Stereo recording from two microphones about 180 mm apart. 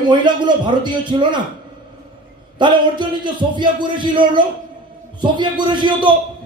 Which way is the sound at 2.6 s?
25° right (ahead or behind).